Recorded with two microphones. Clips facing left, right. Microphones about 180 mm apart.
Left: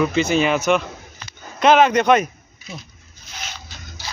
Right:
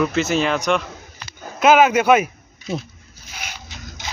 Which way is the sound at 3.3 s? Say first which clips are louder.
Right 1 dB; 10° right (ahead or behind).